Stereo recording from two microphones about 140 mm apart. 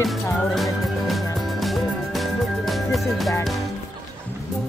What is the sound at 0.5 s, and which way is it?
Music, centre (ahead or behind).